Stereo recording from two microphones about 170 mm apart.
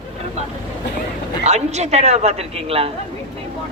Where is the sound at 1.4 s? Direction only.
40° right (ahead or behind).